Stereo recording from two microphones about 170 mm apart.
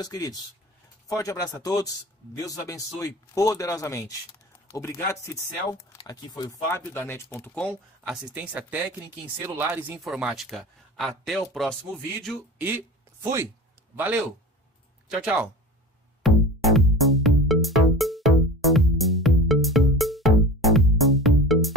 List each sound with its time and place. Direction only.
0.0 s speech: 20° left (ahead or behind)
6.7 s speech: 15° left (ahead or behind)
8.0 s speech: 5° right (ahead or behind)
12.5 s a sound: 10° right (ahead or behind)
13.9 s speech: 10° right (ahead or behind)
16.2 s music: centre (ahead or behind)